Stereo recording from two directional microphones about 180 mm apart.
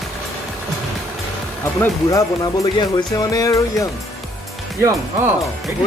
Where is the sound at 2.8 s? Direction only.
20° left (ahead or behind).